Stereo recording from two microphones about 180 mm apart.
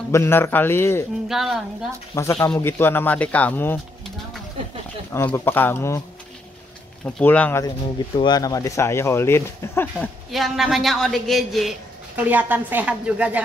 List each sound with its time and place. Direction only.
0.1 s speech: 15° left (ahead or behind)
1.3 s speech: centre (ahead or behind)
2.1 s speech: 15° left (ahead or behind)
5.1 s speech: 15° left (ahead or behind)
7.1 s speech: 5° left (ahead or behind)
8.2 s speech: 20° left (ahead or behind)
9.9 s speech: centre (ahead or behind)